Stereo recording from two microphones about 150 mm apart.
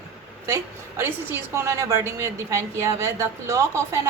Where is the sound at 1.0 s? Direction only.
15° right (ahead or behind).